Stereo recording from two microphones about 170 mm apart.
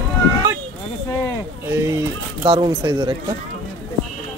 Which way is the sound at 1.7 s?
20° right (ahead or behind).